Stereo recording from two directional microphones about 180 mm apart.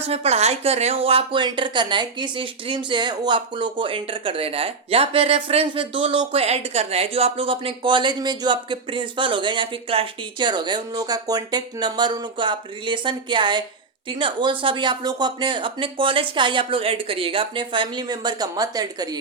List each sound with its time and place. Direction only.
0.0 s speech: 35° right (ahead or behind)